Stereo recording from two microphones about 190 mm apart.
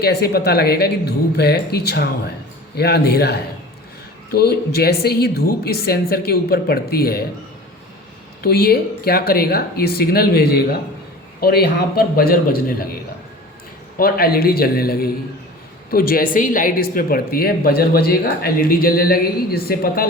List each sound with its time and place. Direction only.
0.0 s speech: 55° left (ahead or behind)
8.4 s speech: 55° left (ahead or behind)
14.0 s speech: 50° left (ahead or behind)